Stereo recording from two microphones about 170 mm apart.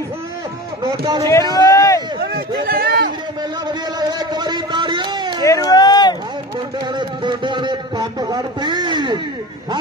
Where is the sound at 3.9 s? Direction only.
25° right (ahead or behind).